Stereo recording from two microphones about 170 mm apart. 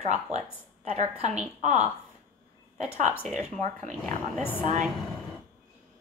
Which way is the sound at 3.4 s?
45° right (ahead or behind).